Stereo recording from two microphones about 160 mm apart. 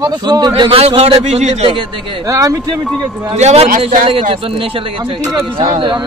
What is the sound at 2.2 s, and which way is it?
Speech, 20° right (ahead or behind).